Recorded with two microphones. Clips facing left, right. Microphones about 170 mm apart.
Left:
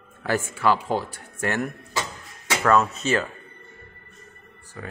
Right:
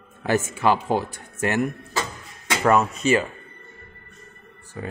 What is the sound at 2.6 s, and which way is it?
Speech, 15° right (ahead or behind).